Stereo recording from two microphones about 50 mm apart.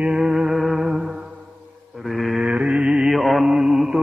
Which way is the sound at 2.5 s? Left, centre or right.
Right.